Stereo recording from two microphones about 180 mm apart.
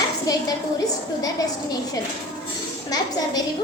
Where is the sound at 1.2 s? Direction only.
20° left (ahead or behind).